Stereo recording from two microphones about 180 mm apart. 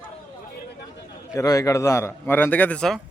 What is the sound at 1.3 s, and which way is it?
A man's voice, 20° left (ahead or behind).